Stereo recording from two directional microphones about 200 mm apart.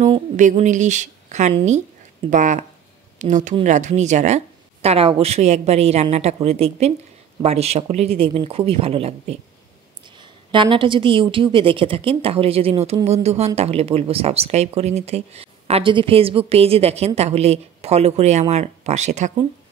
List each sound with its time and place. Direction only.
0.0 s speech: 35° right (ahead or behind)